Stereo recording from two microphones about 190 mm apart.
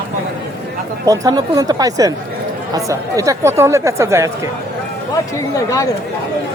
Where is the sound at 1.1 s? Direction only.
20° right (ahead or behind).